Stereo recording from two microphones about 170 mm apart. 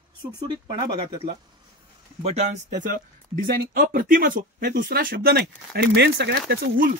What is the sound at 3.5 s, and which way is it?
Speech, 60° right (ahead or behind).